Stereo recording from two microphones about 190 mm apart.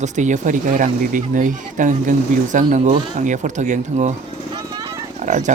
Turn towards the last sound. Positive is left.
turn(degrees=-40)  # may be behind; listen again after turning